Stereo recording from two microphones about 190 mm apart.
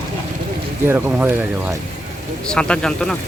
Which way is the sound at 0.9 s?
10° right (ahead or behind).